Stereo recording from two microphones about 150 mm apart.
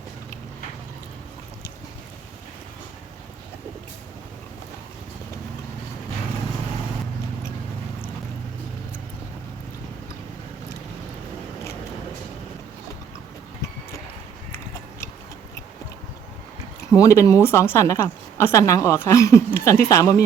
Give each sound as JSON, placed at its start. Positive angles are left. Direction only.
{"t": 16.9, "sound": "a woman's voice", "side_deg": 20}